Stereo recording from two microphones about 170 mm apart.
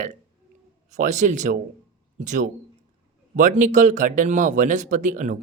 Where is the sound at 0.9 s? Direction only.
45° right (ahead or behind).